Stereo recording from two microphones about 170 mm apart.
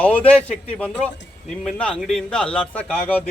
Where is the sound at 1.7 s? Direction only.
5° left (ahead or behind).